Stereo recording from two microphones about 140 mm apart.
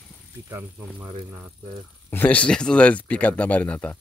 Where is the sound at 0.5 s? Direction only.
15° right (ahead or behind).